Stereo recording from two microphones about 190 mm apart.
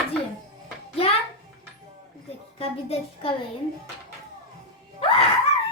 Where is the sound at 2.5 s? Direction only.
30° left (ahead or behind).